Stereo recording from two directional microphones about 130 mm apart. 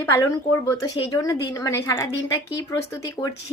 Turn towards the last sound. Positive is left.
turn(degrees=25)  # may be behind; listen again after turning